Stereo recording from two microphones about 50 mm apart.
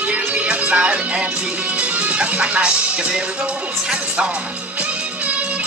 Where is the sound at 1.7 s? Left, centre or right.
Right.